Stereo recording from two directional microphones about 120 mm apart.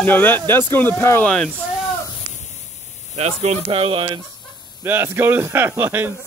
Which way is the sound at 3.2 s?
60° right (ahead or behind).